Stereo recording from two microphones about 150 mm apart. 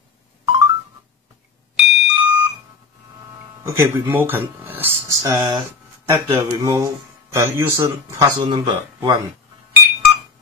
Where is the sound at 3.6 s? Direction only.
20° right (ahead or behind).